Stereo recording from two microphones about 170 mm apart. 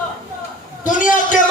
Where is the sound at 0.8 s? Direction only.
50° left (ahead or behind).